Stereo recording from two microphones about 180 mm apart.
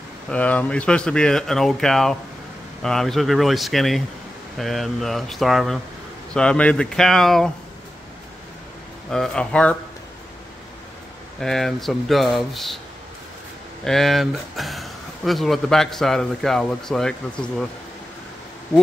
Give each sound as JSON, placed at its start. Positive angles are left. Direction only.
{"t": 0.3, "sound": "speech", "side_deg": 10}
{"t": 9.1, "sound": "speech", "side_deg": 5}
{"t": 11.4, "sound": "speech", "side_deg": 0}
{"t": 13.8, "sound": "speech", "side_deg": 0}